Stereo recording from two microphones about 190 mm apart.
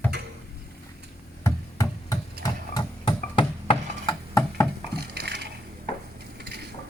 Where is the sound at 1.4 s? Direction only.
15° left (ahead or behind).